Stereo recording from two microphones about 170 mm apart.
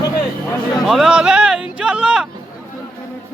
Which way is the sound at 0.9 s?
Centre (ahead or behind).